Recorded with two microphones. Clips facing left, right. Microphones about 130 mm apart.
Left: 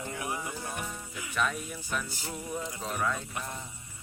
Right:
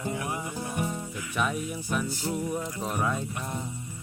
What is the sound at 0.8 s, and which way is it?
Music, 25° right (ahead or behind).